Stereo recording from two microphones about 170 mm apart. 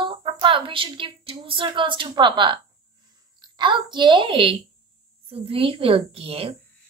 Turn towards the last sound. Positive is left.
turn(degrees=-35)  # may be behind; listen again after turning